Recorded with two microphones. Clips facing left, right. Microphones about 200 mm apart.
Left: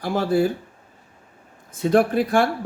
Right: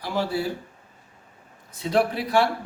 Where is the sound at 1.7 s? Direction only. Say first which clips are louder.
Left 5 dB; 50° left (ahead or behind).